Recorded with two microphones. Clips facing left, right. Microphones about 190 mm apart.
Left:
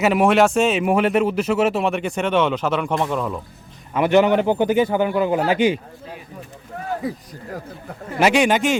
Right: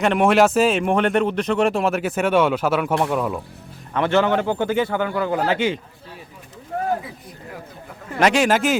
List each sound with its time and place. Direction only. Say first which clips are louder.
0.0 s speech: even; 5° left (ahead or behind)
3.9 s a man's voice: left 3 dB; 15° left (ahead or behind)
8.2 s speech: left 1 dB; centre (ahead or behind)